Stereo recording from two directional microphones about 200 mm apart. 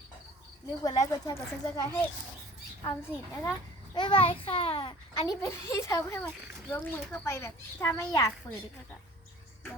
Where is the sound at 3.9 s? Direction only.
25° left (ahead or behind).